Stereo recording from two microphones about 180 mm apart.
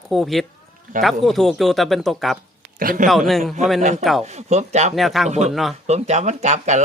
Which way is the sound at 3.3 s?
Centre (ahead or behind).